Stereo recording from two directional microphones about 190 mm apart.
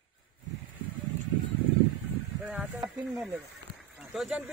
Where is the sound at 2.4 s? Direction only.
5° right (ahead or behind).